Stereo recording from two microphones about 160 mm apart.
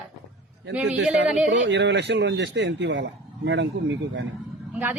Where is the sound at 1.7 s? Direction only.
90° right.